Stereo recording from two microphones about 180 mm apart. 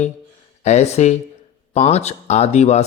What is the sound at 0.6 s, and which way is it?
Speech, 40° left (ahead or behind).